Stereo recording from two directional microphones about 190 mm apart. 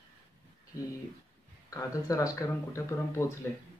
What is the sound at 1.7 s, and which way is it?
Speech, 15° left (ahead or behind).